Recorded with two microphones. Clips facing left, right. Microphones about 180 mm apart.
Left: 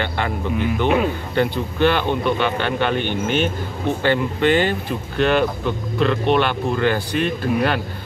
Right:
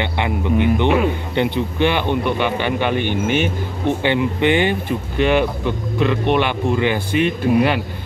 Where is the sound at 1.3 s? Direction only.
15° right (ahead or behind).